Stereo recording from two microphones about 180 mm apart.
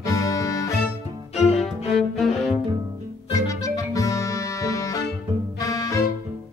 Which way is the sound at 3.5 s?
20° left (ahead or behind).